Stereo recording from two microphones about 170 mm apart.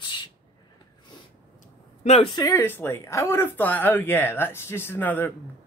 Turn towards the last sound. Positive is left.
turn(degrees=10)  # may be behind; listen again after turning